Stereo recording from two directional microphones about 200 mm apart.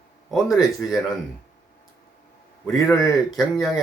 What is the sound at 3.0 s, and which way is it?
Speech, centre (ahead or behind).